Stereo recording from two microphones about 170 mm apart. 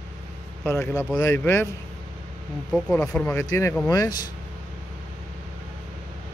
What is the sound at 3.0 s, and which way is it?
Speech, 15° left (ahead or behind).